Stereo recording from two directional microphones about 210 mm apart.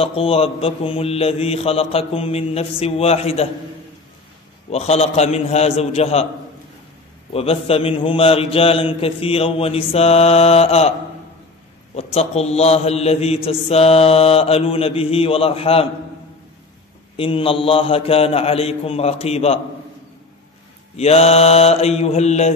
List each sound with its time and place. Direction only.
0.0 s mantra: 25° left (ahead or behind)
4.6 s a man's voice: 30° left (ahead or behind)
7.3 s mantra: 30° left (ahead or behind)
11.9 s mantra: 30° left (ahead or behind)
17.2 s mantra: 25° left (ahead or behind)
20.9 s mantra: 30° left (ahead or behind)